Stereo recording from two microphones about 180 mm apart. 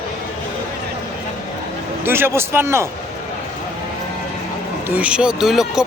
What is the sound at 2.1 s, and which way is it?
Speech, 15° right (ahead or behind).